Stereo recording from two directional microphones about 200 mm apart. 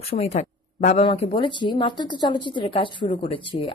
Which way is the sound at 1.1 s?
25° left (ahead or behind).